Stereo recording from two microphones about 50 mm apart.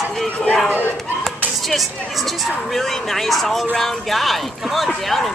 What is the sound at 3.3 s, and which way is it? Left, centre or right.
Speech, centre.